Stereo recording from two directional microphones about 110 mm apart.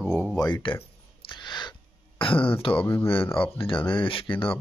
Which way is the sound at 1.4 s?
45° left (ahead or behind).